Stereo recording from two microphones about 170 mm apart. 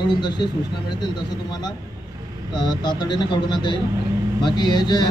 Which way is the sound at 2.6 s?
25° left (ahead or behind).